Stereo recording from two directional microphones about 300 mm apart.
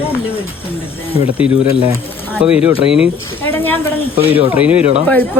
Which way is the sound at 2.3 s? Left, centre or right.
Centre.